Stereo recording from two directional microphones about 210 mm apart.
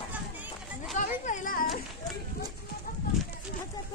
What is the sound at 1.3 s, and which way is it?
Children playing, 40° left (ahead or behind).